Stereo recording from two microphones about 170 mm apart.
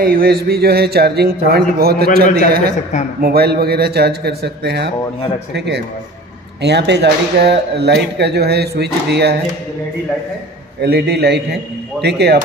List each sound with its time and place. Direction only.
0.0 s a man's voice: 60° right (ahead or behind)
10.8 s speech: 75° right (ahead or behind)